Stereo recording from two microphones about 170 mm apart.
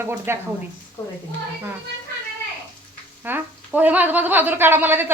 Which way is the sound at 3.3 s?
10° right (ahead or behind).